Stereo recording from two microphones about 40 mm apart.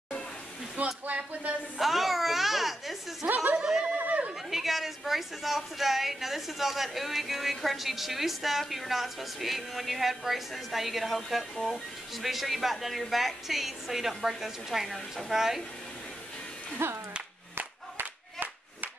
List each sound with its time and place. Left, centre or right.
0.8 s speech: right
1.8 s a woman's voice: centre
4.0 s chatter: right
4.5 s a woman's voice: centre
16.7 s speech: right
17.6 s crowd: right